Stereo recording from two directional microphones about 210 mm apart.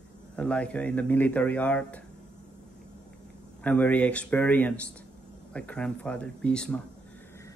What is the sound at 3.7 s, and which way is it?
Speech, 5° left (ahead or behind).